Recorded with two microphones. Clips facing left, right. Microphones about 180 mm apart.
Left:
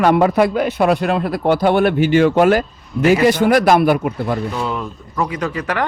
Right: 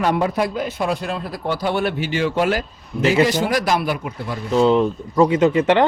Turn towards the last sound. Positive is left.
turn(degrees=-25)  # may be behind; listen again after turning